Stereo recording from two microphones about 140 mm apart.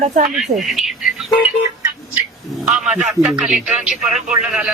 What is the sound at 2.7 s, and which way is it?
Speech, 5° right (ahead or behind).